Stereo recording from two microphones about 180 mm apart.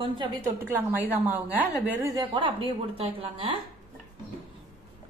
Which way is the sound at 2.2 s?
30° right (ahead or behind).